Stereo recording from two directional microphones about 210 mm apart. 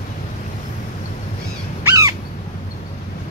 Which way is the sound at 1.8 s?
15° right (ahead or behind).